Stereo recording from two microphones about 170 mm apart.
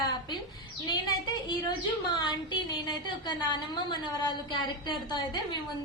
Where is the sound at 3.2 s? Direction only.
25° left (ahead or behind).